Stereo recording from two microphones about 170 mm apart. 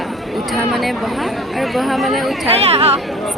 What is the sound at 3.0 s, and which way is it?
Speech, centre (ahead or behind).